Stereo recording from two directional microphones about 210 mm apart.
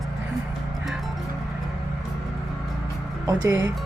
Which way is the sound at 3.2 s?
15° right (ahead or behind).